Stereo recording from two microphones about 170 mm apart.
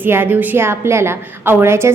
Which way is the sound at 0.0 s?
10° right (ahead or behind).